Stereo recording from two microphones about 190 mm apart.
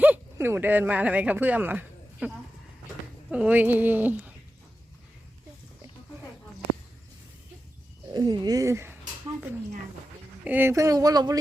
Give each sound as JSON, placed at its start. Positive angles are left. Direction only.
{"t": 0.0, "sound": "speech", "side_deg": -10}
{"t": 8.1, "sound": "speech", "side_deg": -20}
{"t": 10.4, "sound": "speech", "side_deg": -10}